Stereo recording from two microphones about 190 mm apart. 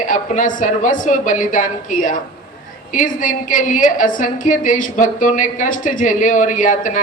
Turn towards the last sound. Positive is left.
turn(degrees=40)  # may be behind; listen again after turning